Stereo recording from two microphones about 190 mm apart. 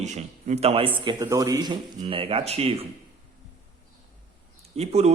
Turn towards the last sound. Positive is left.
turn(degrees=-35)  # may be behind; listen again after turning